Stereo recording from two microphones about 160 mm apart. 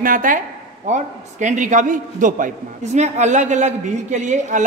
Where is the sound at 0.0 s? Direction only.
60° right (ahead or behind).